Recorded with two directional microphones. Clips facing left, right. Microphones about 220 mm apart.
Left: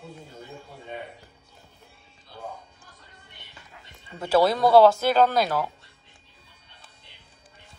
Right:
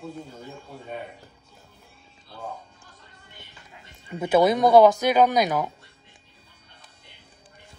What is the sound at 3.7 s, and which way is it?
Speech, 20° right (ahead or behind).